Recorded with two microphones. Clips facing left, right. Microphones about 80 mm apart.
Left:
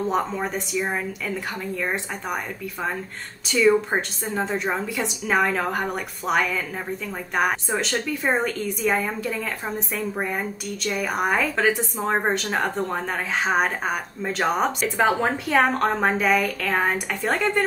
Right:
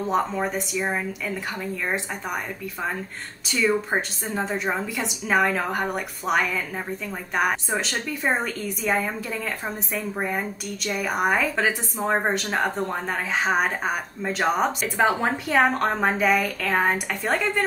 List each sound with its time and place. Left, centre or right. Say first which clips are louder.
0.1 s a woman's voice: right 1 dB; centre
3.4 s a woman's voice: left 4 dB; centre